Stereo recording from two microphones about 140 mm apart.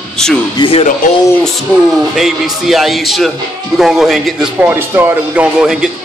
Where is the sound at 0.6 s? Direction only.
40° left (ahead or behind).